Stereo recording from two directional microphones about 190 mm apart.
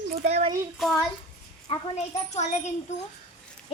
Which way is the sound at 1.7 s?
30° left (ahead or behind).